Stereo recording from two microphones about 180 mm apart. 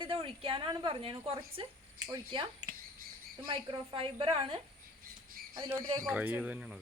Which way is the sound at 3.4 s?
30° right (ahead or behind).